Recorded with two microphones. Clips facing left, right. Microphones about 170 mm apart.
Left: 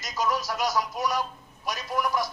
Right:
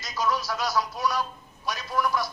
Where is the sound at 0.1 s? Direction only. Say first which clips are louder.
Even; 15° left (ahead or behind).